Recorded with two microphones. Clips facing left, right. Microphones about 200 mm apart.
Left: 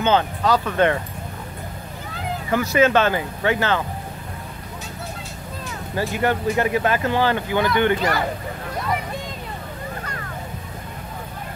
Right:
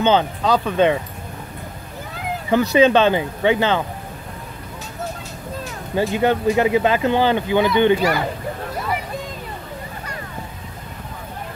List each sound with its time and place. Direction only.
0.0 s speech: 15° right (ahead or behind)
2.7 s speech: 20° right (ahead or behind)
5.9 s speech: 20° right (ahead or behind)